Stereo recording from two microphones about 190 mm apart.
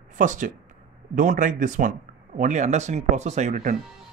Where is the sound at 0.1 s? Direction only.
40° right (ahead or behind).